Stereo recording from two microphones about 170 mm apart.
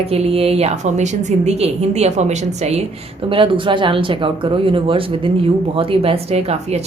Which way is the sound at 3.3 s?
30° right (ahead or behind).